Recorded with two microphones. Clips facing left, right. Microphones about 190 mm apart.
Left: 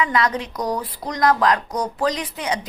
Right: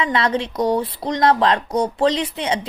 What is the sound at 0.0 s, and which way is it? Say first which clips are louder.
Speech: right 1 dB; 30° right (ahead or behind).